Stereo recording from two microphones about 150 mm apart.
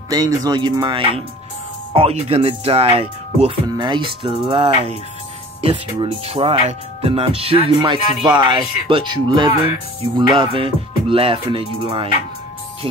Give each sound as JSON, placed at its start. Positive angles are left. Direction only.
{"t": 0.1, "sound": "speech", "side_deg": -25}
{"t": 2.0, "sound": "music", "side_deg": -40}
{"t": 3.6, "sound": "music", "side_deg": -30}